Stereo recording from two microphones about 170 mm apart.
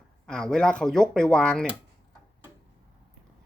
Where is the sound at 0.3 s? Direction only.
5° left (ahead or behind).